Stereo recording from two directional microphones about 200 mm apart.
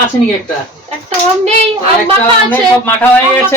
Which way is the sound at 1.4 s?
30° right (ahead or behind).